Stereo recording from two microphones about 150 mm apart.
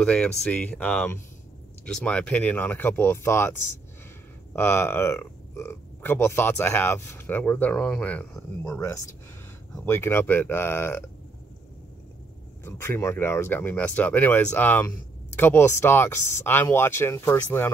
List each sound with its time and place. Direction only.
0.0 s speech: 5° left (ahead or behind)
4.6 s speech: 15° left (ahead or behind)
12.6 s speech: 15° left (ahead or behind)